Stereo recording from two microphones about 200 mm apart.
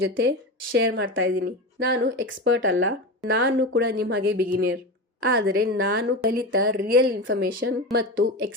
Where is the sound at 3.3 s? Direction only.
60° right (ahead or behind).